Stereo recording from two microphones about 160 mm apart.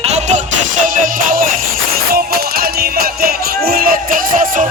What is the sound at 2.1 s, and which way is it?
Music, 70° right (ahead or behind).